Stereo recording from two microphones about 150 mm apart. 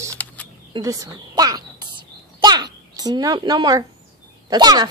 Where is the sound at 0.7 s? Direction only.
25° right (ahead or behind).